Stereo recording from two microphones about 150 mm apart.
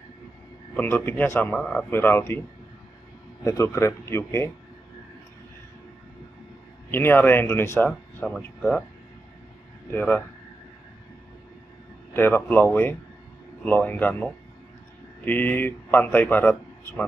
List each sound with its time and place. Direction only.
0.7 s speech: 10° left (ahead or behind)
3.4 s speech: 20° left (ahead or behind)
6.9 s speech: 15° left (ahead or behind)
9.9 s speech: 10° left (ahead or behind)
12.1 s speech: 15° left (ahead or behind)